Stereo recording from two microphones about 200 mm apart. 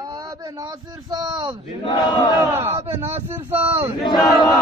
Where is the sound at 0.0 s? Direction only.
20° right (ahead or behind).